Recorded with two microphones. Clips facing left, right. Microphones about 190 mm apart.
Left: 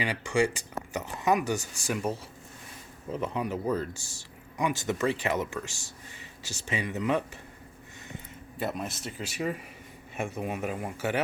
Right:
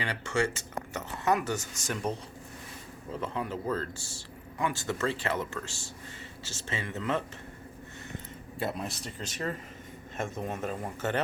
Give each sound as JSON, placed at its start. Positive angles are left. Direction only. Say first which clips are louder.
{"t": 0.0, "sound": "speech", "louder": "left 3 dB", "side_deg": 15}
{"t": 3.1, "sound": "speech", "louder": "left 3 dB", "side_deg": 20}
{"t": 8.5, "sound": "speech", "louder": "left 1 dB", "side_deg": 0}